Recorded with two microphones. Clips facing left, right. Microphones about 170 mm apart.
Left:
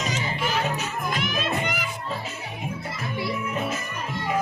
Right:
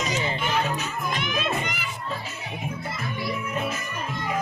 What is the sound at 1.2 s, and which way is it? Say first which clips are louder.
Music: left 1 dB; 50° left (ahead or behind).